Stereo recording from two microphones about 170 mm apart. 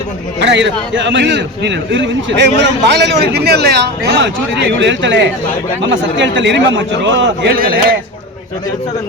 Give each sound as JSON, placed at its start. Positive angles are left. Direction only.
{"t": 0.4, "sound": "a man's voice", "side_deg": -90}